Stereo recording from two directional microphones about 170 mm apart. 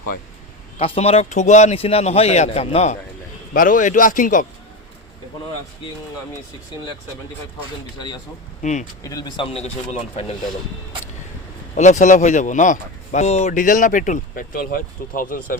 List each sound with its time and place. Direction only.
0.8 s speech: 35° left (ahead or behind)
3.5 s speech: 55° left (ahead or behind)
7.9 s speech: 25° left (ahead or behind)
8.6 s speech: 45° left (ahead or behind)
9.0 s speech: 25° left (ahead or behind)
11.7 s speech: 45° left (ahead or behind)